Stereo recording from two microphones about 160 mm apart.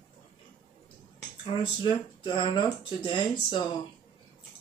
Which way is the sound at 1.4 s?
30° left (ahead or behind).